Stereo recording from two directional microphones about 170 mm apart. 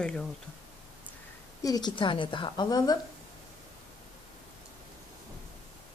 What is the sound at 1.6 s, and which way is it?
A woman's voice, 25° left (ahead or behind).